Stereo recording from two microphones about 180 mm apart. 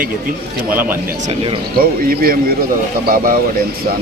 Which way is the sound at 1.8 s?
55° right (ahead or behind).